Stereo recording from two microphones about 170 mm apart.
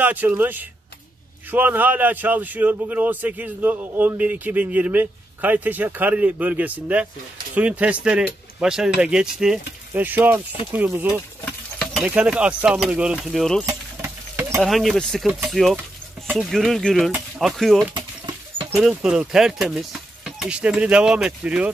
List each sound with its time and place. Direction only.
0.0 s a man's voice: 10° right (ahead or behind)
11.4 s a sound: centre (ahead or behind)
12.1 s speech: 5° right (ahead or behind)
13.7 s a sound: 15° right (ahead or behind)
14.6 s speech: centre (ahead or behind)
17.9 s bird: 30° right (ahead or behind)
18.7 s speech: centre (ahead or behind)